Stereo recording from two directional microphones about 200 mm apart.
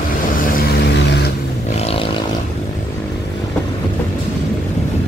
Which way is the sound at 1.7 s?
30° left (ahead or behind).